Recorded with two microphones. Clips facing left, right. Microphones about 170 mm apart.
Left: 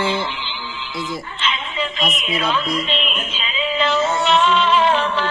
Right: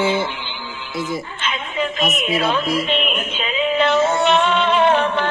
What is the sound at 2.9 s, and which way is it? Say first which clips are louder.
Music: right 3 dB; 55° right (ahead or behind).